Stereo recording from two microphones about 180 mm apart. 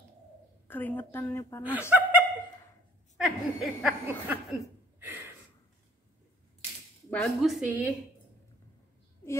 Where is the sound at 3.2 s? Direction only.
Centre (ahead or behind).